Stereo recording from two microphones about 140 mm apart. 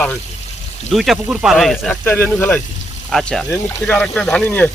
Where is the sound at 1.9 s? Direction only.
15° left (ahead or behind).